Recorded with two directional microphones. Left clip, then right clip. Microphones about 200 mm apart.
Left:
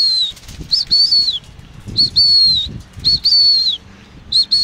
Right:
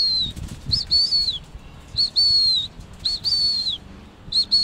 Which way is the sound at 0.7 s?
5° right (ahead or behind).